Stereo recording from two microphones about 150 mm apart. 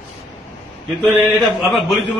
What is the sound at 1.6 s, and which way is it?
Speech, centre (ahead or behind).